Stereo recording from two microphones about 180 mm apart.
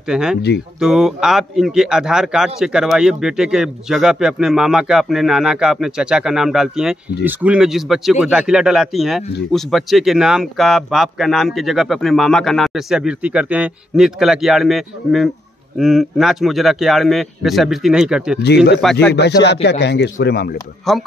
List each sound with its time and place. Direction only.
0.1 s speech: 5° right (ahead or behind)
19.1 s a man's voice: 70° left (ahead or behind)
20.9 s speech: centre (ahead or behind)